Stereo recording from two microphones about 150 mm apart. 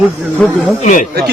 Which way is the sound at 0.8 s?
55° left (ahead or behind).